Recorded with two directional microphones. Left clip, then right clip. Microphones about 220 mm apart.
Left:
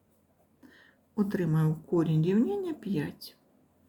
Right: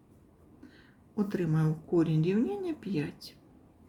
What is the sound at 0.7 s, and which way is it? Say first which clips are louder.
Speech: left 3 dB; 15° left (ahead or behind).